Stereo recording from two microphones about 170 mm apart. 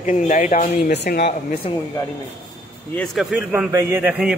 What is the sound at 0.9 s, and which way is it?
Speech, 85° left.